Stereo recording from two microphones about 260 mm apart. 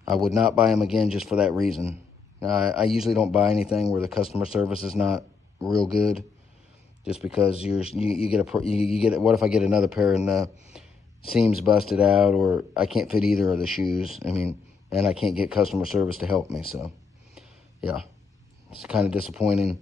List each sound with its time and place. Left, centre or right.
0.1 s speech: centre
8.0 s speech: left
8.3 s speech: centre
8.6 s speech: left
9.0 s speech: centre
17.4 s a sound: centre
18.8 s speech: centre